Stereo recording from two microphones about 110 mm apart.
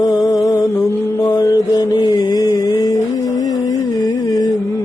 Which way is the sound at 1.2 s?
35° left (ahead or behind).